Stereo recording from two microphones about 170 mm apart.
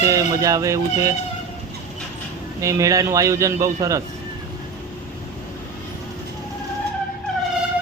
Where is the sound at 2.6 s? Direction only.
20° right (ahead or behind).